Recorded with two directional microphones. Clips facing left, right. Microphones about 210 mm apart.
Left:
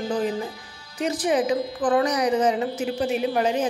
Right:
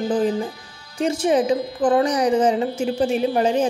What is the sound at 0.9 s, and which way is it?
A woman's voice, 25° right (ahead or behind).